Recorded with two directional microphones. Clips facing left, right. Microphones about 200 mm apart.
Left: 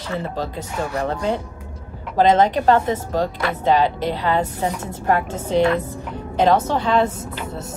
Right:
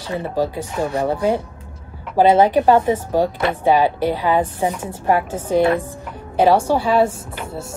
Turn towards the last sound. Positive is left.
turn(degrees=-10)  # may be behind; listen again after turning